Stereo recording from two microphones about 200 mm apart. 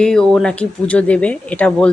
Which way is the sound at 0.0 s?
5° left (ahead or behind).